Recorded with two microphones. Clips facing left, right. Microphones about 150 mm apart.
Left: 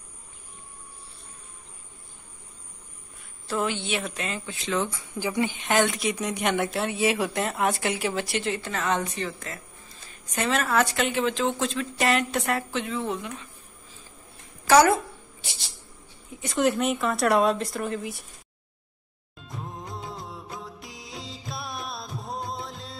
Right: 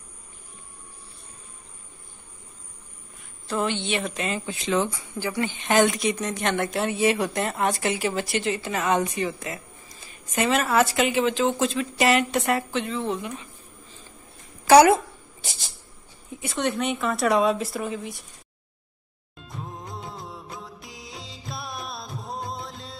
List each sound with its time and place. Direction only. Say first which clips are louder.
3.4 s speech: right 2 dB; 5° left (ahead or behind)
4.5 s speech: right 3 dB; 15° right (ahead or behind)
5.2 s speech: left 1 dB; 15° left (ahead or behind)
5.7 s speech: right 5 dB; centre (ahead or behind)
14.7 s speech: right 4 dB; 15° right (ahead or behind)
16.4 s speech: left 2 dB; centre (ahead or behind)
19.3 s music of bollywood: even; centre (ahead or behind)